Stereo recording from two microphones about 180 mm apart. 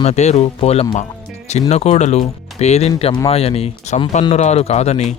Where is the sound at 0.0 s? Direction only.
35° left (ahead or behind).